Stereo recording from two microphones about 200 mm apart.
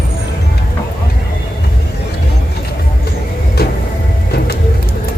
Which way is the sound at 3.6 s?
50° left (ahead or behind).